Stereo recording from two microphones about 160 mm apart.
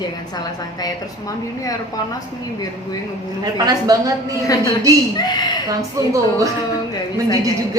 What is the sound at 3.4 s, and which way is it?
Speech, 25° right (ahead or behind).